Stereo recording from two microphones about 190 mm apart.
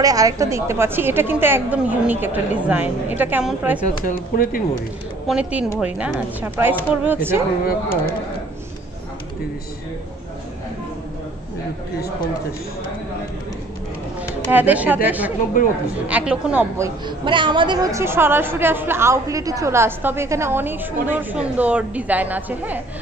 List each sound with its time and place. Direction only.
0.0 s a woman's voice: 20° right (ahead or behind)
3.8 s speech: 45° left (ahead or behind)
5.3 s a woman's voice: 5° right (ahead or behind)
14.5 s a woman's voice: 10° right (ahead or behind)
15.6 s speech: 45° left (ahead or behind)
16.1 s a woman's voice: 5° right (ahead or behind)
17.2 s a woman's voice: 25° right (ahead or behind); by 22.8 s 10° right (ahead or behind)